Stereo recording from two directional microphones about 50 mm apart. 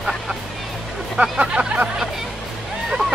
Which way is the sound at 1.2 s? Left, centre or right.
Centre.